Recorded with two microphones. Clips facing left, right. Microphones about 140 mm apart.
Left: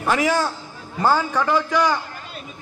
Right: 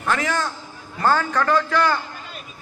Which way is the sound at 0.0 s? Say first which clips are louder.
Left 3 dB; 10° left (ahead or behind).